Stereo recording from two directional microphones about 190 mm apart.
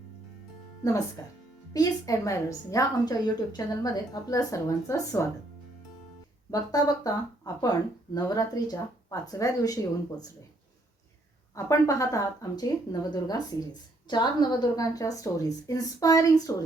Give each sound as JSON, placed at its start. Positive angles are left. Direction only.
{"t": 1.2, "sound": "a woman's voice", "side_deg": 15}
{"t": 6.5, "sound": "a woman's voice", "side_deg": 20}
{"t": 11.5, "sound": "a woman's voice", "side_deg": 15}